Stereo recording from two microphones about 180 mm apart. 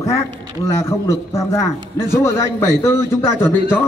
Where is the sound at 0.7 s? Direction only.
15° left (ahead or behind).